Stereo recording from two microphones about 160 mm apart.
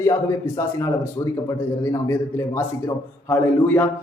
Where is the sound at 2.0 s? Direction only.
20° left (ahead or behind).